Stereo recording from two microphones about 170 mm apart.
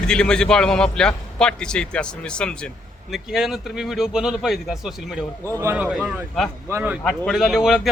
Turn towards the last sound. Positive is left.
turn(degrees=-5)  # may be behind; listen again after turning